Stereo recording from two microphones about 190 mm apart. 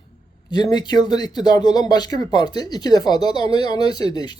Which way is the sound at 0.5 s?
20° left (ahead or behind).